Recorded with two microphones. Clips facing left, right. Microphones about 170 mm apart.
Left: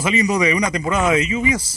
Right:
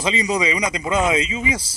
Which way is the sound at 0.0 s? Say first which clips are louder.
Left 3 dB; 25° right (ahead or behind).